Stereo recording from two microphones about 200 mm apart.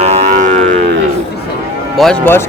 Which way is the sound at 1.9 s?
5° left (ahead or behind).